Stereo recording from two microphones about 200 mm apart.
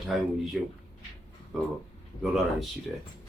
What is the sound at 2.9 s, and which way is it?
Speech, centre (ahead or behind).